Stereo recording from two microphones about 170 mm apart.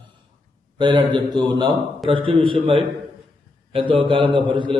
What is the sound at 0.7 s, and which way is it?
A man's voice, 25° right (ahead or behind).